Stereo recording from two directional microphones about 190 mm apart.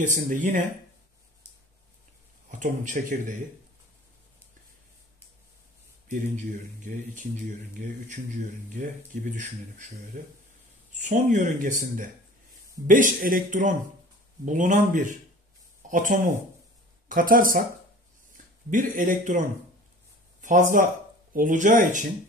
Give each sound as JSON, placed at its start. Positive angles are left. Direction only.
{"t": 0.0, "sound": "speech", "side_deg": -40}
{"t": 2.6, "sound": "speech", "side_deg": -40}
{"t": 6.0, "sound": "speech", "side_deg": -40}
{"t": 18.7, "sound": "speech", "side_deg": -45}